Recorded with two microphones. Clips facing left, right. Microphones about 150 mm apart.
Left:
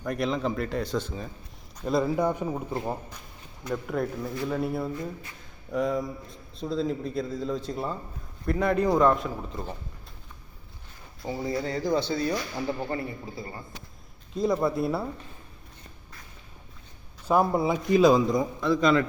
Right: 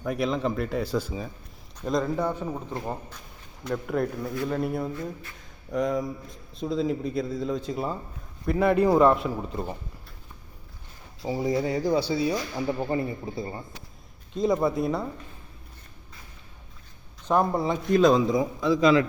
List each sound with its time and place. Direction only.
0.0 s speech: centre (ahead or behind)
1.8 s a man's voice: 5° left (ahead or behind)
11.2 s a man's voice: 15° right (ahead or behind)
13.0 s a man's voice: 25° right (ahead or behind)
14.3 s speech: centre (ahead or behind)
17.2 s speech: 10° left (ahead or behind)